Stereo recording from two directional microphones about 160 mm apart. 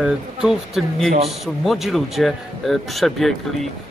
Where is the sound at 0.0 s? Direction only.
5° right (ahead or behind).